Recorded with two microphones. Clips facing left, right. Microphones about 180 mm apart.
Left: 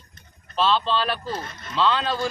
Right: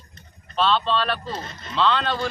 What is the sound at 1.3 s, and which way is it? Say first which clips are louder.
Speech: left 1 dB; 25° right (ahead or behind).